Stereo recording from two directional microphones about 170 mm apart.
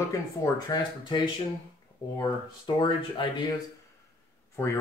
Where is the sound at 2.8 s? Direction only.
30° left (ahead or behind).